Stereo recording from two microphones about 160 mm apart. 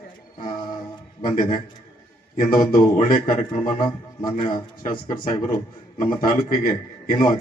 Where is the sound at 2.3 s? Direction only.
60° left (ahead or behind).